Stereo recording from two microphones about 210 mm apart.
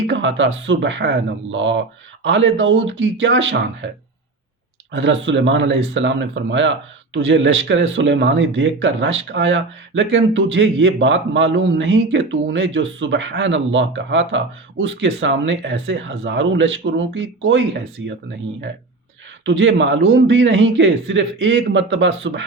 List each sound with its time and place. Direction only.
0.1 s speech: 60° right (ahead or behind)
4.9 s speech: 60° right (ahead or behind)
19.5 s speech: 60° right (ahead or behind)